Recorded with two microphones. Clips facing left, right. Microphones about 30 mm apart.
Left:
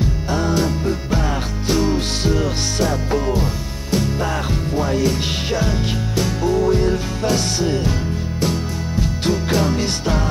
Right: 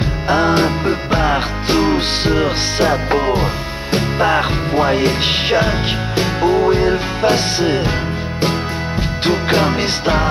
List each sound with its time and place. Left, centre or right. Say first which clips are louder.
0.0 s music: right 6 dB; right
9.2 s music: right 5 dB; right